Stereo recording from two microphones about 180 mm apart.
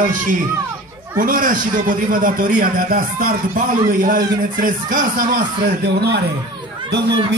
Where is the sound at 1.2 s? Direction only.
50° right (ahead or behind).